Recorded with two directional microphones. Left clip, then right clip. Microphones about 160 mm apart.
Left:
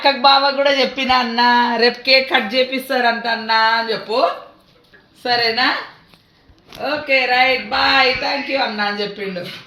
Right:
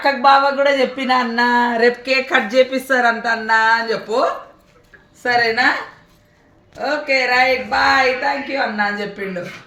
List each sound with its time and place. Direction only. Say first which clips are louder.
0.0 s speech: even; 25° left (ahead or behind)
2.5 s speech: right 3 dB; 5° left (ahead or behind)
6.8 s speech: even; centre (ahead or behind)